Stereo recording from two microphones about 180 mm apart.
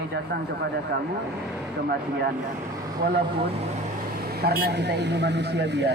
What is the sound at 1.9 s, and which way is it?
Speech, 65° right (ahead or behind).